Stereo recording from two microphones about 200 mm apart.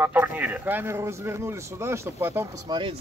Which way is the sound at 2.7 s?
25° right (ahead or behind).